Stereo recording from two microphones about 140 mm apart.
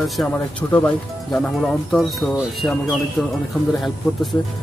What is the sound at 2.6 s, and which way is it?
Speech, 20° left (ahead or behind).